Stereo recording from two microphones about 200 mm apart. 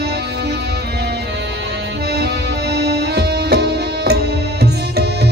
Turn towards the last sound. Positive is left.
turn(degrees=-55)  # may be behind; listen again after turning